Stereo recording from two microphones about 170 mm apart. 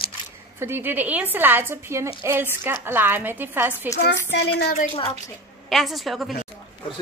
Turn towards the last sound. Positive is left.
turn(degrees=0)  # may be behind; listen again after turning